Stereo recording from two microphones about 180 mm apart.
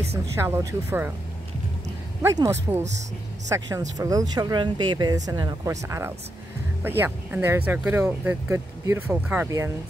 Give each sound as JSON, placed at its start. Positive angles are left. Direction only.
{"t": 0.4, "sound": "speech", "side_deg": -15}
{"t": 2.2, "sound": "speech", "side_deg": -15}